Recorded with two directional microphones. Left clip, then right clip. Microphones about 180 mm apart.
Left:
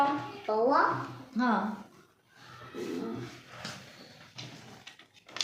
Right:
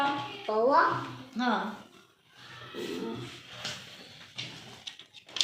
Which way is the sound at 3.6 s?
55° left (ahead or behind).